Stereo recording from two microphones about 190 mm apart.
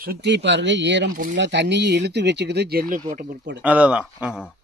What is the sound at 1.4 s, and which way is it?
Speech, 65° right (ahead or behind).